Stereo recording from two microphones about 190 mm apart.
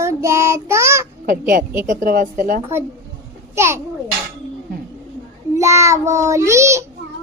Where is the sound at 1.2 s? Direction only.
45° right (ahead or behind).